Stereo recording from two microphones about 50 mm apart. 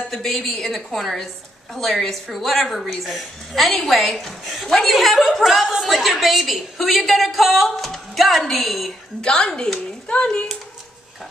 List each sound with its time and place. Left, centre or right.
0.1 s a woman's voice: centre
9.2 s speech: centre